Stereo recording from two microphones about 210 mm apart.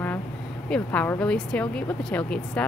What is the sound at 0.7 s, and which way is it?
Speech, 5° left (ahead or behind).